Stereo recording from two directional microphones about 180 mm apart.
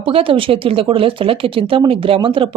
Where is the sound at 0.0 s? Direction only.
30° right (ahead or behind).